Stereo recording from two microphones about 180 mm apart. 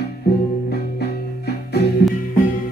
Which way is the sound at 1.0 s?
60° left (ahead or behind).